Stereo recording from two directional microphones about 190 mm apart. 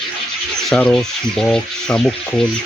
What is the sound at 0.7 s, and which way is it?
Speech, 5° left (ahead or behind).